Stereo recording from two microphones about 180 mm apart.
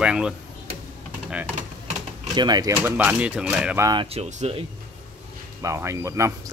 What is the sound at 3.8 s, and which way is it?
Speech, 25° right (ahead or behind).